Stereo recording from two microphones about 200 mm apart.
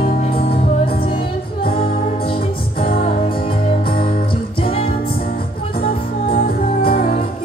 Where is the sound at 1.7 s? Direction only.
25° left (ahead or behind).